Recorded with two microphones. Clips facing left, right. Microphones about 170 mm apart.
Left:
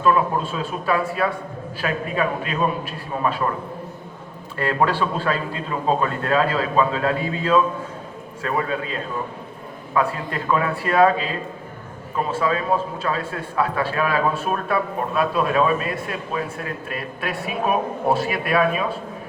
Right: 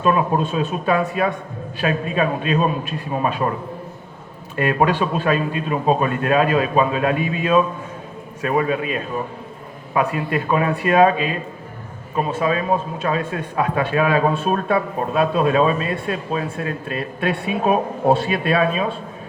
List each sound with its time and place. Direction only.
0.0 s a man's voice: 20° right (ahead or behind)
4.5 s a man's voice: 20° right (ahead or behind)